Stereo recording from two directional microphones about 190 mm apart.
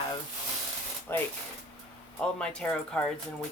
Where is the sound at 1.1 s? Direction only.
10° left (ahead or behind).